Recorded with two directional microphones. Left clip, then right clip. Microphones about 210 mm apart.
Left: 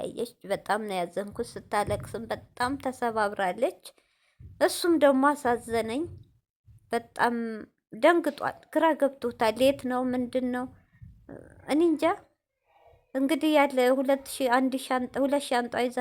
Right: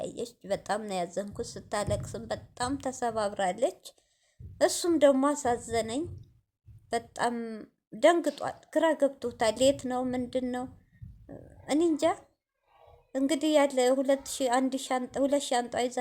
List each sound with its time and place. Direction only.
0.0 s a woman's voice: 20° left (ahead or behind)
13.1 s a woman's voice: 20° left (ahead or behind)